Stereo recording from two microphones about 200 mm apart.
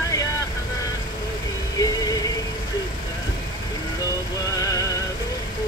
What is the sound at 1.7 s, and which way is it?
Music, 15° left (ahead or behind).